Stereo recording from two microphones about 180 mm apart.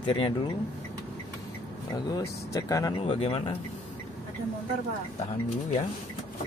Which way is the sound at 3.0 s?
30° left (ahead or behind).